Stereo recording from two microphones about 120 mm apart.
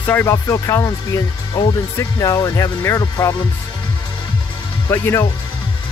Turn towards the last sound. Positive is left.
turn(degrees=20)  # may be behind; listen again after turning